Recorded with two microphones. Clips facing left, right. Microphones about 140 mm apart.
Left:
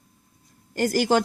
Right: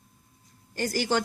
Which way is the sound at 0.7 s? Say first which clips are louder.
Left 6 dB; 45° left (ahead or behind).